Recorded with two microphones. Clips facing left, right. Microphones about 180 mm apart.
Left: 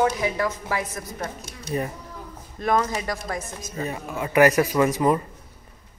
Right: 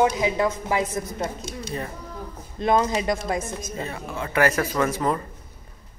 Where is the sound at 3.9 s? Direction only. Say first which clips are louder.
Left 5 dB; 15° left (ahead or behind).